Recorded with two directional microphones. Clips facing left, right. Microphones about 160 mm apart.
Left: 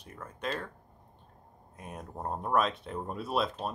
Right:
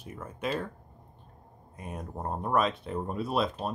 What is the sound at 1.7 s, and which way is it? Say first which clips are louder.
Speech: right 3 dB; centre (ahead or behind).